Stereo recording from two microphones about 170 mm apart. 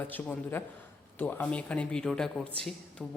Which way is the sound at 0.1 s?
10° left (ahead or behind).